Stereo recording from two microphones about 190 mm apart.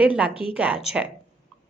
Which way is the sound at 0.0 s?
5° right (ahead or behind).